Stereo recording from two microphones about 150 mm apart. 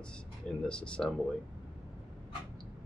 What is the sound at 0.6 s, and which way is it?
Speech, 5° left (ahead or behind).